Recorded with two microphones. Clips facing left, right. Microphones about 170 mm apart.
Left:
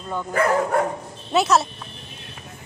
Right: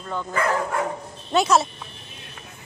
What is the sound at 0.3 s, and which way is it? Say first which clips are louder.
Speech: left 5 dB; 45° left (ahead or behind).